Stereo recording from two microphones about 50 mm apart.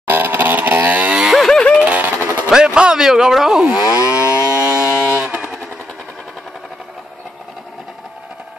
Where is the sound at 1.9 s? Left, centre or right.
Right.